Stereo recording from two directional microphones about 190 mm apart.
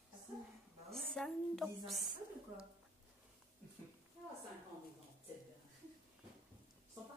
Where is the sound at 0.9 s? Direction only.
Centre (ahead or behind).